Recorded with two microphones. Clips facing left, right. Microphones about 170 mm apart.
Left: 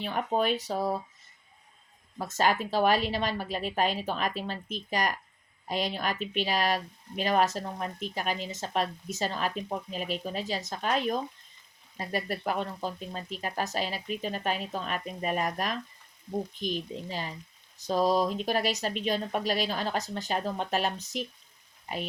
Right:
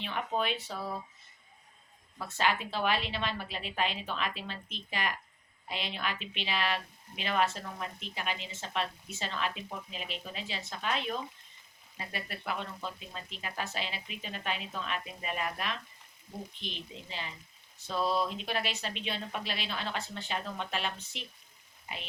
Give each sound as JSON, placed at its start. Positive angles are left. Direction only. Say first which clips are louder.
{"t": 0.0, "sound": "speech", "louder": "left 5 dB", "side_deg": 40}
{"t": 2.1, "sound": "speech", "louder": "left 5 dB", "side_deg": 40}